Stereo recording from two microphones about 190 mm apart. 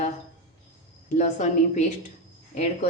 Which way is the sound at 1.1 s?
40° left (ahead or behind).